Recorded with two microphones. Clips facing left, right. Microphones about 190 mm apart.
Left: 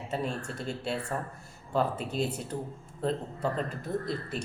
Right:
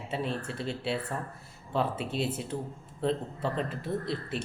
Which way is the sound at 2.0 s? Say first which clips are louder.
Even; 40° left (ahead or behind).